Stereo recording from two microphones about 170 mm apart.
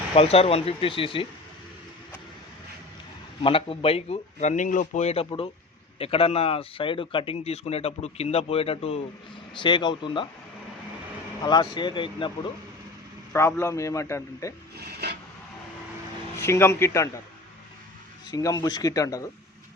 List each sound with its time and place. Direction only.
0.1 s speech: 35° left (ahead or behind)
3.4 s speech: 30° left (ahead or behind)
11.4 s speech: 25° left (ahead or behind)
13.3 s a man's voice: 15° left (ahead or behind)
16.4 s a man's voice: 15° left (ahead or behind)
18.3 s speech: 20° left (ahead or behind)